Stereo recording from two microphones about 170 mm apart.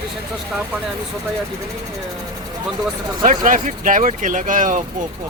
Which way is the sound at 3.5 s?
50° right (ahead or behind).